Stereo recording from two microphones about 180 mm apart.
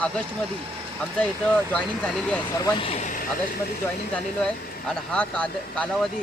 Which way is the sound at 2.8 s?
35° left (ahead or behind).